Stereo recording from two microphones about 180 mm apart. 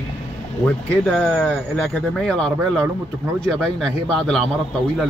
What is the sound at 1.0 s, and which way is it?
Speech, 5° left (ahead or behind).